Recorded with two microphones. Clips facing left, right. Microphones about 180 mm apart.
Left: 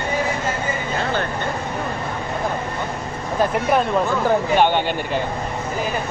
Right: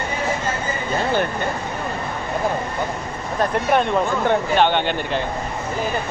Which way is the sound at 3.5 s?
5° left (ahead or behind).